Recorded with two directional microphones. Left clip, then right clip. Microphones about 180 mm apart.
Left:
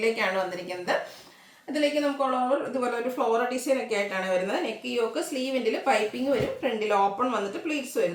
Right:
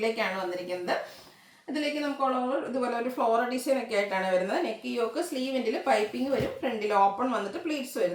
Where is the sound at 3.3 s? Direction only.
10° left (ahead or behind).